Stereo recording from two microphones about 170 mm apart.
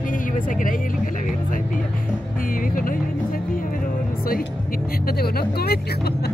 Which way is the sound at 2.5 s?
55° left (ahead or behind).